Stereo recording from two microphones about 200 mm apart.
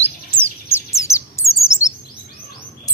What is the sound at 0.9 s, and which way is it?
Bird, 15° left (ahead or behind).